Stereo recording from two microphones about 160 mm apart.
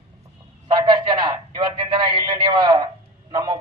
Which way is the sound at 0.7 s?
30° right (ahead or behind).